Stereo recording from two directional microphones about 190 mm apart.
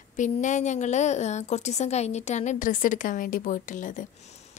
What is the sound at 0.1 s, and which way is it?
A woman's voice, 40° left (ahead or behind).